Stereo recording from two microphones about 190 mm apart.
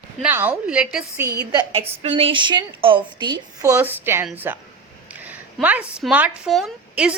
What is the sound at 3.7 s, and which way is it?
Child singing, 10° right (ahead or behind).